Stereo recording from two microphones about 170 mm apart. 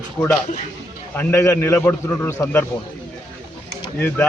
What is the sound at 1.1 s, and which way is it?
A man's voice, 15° left (ahead or behind).